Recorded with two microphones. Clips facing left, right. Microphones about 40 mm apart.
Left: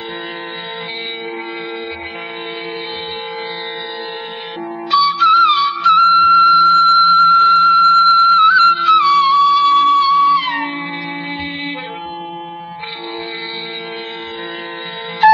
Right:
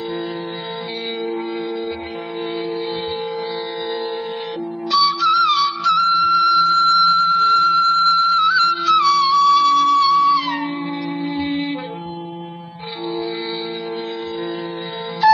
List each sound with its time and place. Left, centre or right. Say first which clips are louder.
4.9 s music: left 5 dB; left
10.9 s music: even; left
15.2 s music: left 4 dB; left